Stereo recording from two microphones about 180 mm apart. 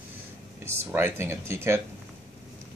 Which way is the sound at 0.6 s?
15° right (ahead or behind).